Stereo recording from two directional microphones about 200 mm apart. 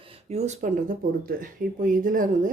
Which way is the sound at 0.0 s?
30° right (ahead or behind).